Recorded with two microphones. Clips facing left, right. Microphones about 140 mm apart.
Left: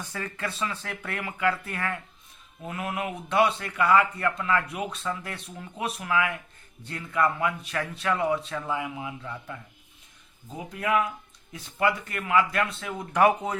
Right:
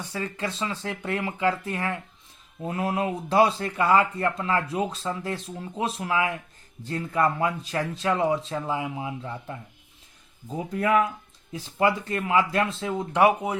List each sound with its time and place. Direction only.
0.1 s a man's voice: 20° right (ahead or behind)
10.8 s a man's voice: 40° right (ahead or behind)
13.1 s speech: 15° right (ahead or behind)